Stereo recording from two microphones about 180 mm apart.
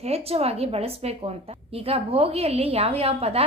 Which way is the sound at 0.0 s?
35° right (ahead or behind).